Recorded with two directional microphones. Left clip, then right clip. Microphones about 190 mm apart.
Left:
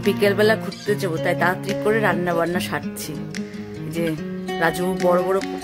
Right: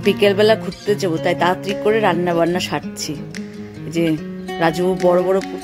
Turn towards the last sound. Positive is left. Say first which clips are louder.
# right 3 dB
turn(degrees=0)  # may be behind; listen again after turning